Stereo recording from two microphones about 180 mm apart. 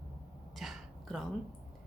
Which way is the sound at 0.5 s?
Centre (ahead or behind).